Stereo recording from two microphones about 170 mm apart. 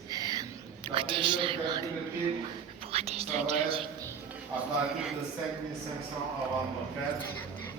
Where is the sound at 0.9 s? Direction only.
30° right (ahead or behind).